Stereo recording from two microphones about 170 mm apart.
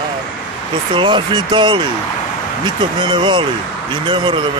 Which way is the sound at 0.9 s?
30° right (ahead or behind).